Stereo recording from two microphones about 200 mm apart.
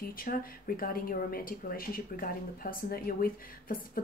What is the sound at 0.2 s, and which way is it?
Speech, 45° left (ahead or behind).